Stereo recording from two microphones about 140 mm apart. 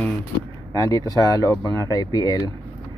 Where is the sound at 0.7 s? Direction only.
25° left (ahead or behind).